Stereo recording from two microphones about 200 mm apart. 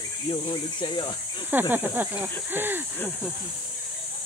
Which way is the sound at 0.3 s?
20° left (ahead or behind).